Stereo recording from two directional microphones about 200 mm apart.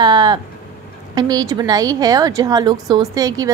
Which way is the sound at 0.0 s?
20° right (ahead or behind).